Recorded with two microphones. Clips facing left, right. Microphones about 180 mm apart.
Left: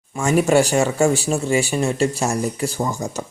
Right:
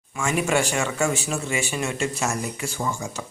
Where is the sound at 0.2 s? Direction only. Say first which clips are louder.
Left 7 dB; 40° left (ahead or behind).